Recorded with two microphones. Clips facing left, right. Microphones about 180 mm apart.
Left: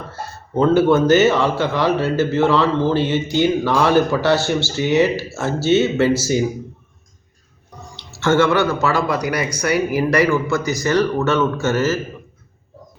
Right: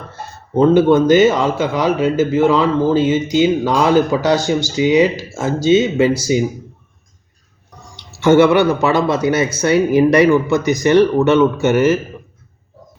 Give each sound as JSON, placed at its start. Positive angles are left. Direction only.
{"t": 0.5, "sound": "speech", "side_deg": -20}
{"t": 7.9, "sound": "speech", "side_deg": -15}